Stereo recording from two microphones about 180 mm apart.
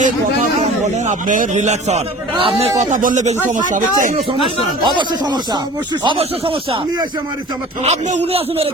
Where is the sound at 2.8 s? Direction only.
45° right (ahead or behind).